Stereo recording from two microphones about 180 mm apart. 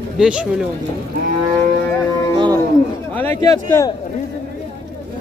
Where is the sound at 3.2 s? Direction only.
15° left (ahead or behind).